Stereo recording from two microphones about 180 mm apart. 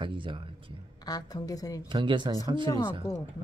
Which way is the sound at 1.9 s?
25° right (ahead or behind).